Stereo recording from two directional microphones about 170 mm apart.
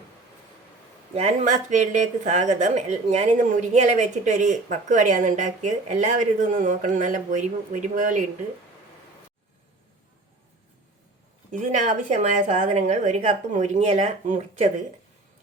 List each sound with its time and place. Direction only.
1.1 s speech: 45° right (ahead or behind)
11.5 s speech: 45° right (ahead or behind)